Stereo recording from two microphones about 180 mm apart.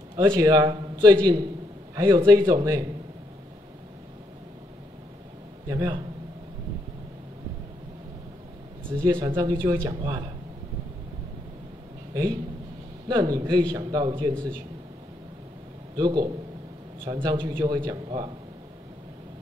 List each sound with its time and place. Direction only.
0.1 s a man's voice: 25° right (ahead or behind)
5.7 s a man's voice: 20° right (ahead or behind)
9.2 s a man's voice: 20° right (ahead or behind)
12.1 s a man's voice: 20° right (ahead or behind)
16.0 s a man's voice: 25° right (ahead or behind)